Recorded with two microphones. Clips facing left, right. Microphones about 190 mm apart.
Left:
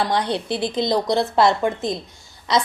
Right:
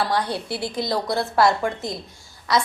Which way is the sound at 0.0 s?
20° left (ahead or behind).